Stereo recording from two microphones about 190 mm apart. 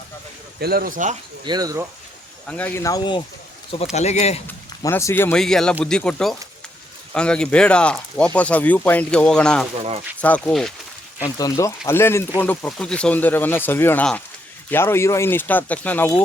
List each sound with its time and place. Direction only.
0.6 s speech: 50° right (ahead or behind)
1.5 s speech: 20° right (ahead or behind)
2.5 s speech: 10° left (ahead or behind); by 3.2 s 25° left (ahead or behind)
3.9 s speech: 35° left (ahead or behind)
4.4 s speech: 15° left (ahead or behind)
11.3 s speech: 15° left (ahead or behind)